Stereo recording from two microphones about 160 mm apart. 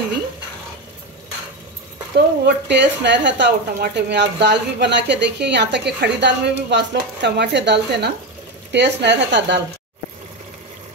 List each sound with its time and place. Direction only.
2.4 s a woman's voice: 90° right